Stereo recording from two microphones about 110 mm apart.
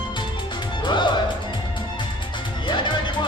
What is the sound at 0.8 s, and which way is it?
Music, 45° left (ahead or behind).